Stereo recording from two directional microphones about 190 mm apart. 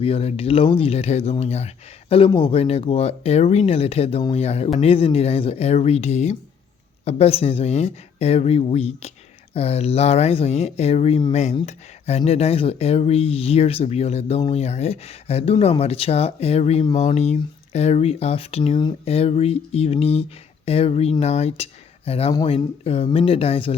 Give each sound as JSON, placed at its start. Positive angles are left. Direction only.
{"t": 0.0, "sound": "speech", "side_deg": 30}
{"t": 22.3, "sound": "speech", "side_deg": 20}
{"t": 22.5, "sound": "speech", "side_deg": 30}